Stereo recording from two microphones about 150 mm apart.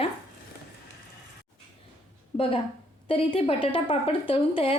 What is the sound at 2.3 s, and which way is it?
A woman's voice, 40° left (ahead or behind).